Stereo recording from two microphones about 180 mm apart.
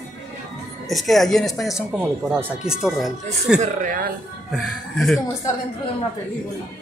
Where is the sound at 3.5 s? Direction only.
50° right (ahead or behind).